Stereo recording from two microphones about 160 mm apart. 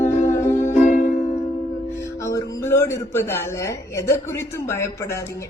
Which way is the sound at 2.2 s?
20° left (ahead or behind).